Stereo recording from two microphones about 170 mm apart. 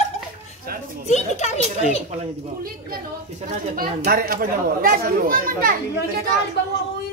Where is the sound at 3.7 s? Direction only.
55° right (ahead or behind).